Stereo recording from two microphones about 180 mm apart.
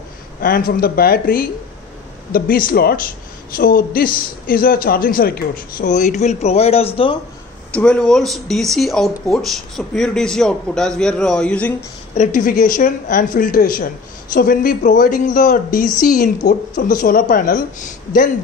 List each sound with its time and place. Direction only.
0.4 s speech: 55° left (ahead or behind); by 7.2 s 30° left (ahead or behind)
7.7 s a man's voice: 5° left (ahead or behind)
12.2 s speech: 50° left (ahead or behind)